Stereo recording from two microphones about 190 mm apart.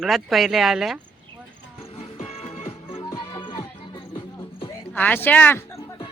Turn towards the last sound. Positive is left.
turn(degrees=10)  # may be behind; listen again after turning